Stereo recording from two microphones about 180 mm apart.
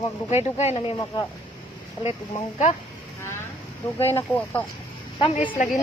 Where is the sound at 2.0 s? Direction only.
35° left (ahead or behind).